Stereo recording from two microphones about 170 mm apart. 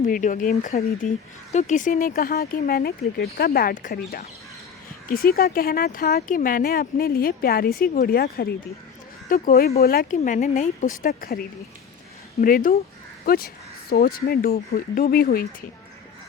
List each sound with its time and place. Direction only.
0.0 s speech: 55° left (ahead or behind)
5.0 s speech: 60° left (ahead or behind)
12.4 s speech: 55° left (ahead or behind)